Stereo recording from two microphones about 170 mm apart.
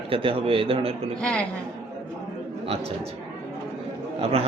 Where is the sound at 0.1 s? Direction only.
30° right (ahead or behind).